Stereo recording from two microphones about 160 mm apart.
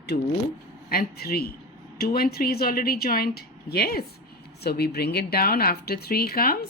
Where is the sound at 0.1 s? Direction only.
55° left (ahead or behind).